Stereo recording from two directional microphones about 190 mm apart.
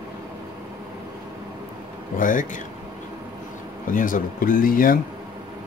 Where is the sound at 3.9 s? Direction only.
45° left (ahead or behind).